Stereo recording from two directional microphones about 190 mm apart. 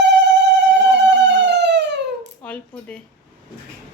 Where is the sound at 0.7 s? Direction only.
65° right (ahead or behind).